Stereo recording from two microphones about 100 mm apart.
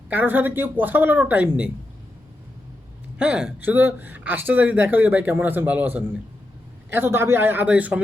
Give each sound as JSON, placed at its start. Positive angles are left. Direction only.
{"t": 0.1, "sound": "speech", "side_deg": -20}
{"t": 3.2, "sound": "a man's voice", "side_deg": -10}